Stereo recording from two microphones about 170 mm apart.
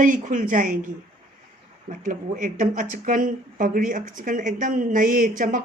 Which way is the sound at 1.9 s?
50° right (ahead or behind).